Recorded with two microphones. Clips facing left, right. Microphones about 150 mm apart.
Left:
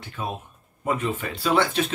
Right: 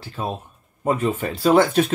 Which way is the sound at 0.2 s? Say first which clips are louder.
Right 4 dB; 35° right (ahead or behind).